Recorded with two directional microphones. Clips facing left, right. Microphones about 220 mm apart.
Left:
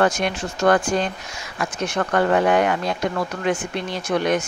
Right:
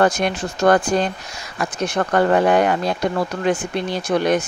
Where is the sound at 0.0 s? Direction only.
35° right (ahead or behind).